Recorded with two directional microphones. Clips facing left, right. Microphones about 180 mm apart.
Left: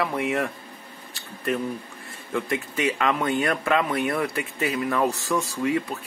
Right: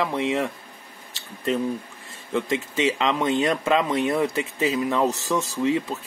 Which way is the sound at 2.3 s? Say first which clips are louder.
Right 2 dB; 20° right (ahead or behind).